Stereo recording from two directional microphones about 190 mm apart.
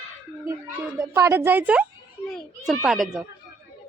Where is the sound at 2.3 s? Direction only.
5° left (ahead or behind).